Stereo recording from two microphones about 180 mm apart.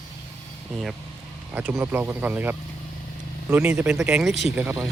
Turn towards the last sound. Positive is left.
turn(degrees=-10)  # may be behind; listen again after turning